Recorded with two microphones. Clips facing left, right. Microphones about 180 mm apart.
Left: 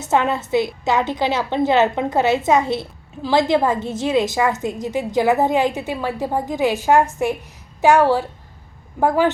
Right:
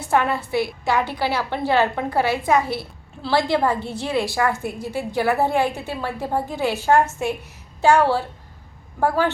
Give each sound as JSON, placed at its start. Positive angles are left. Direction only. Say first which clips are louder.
{"t": 0.0, "sound": "a woman's voice", "louder": "left 2 dB", "side_deg": 20}